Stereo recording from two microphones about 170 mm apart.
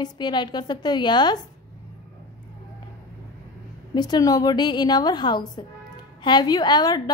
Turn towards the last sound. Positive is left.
turn(degrees=25)  # may be behind; listen again after turning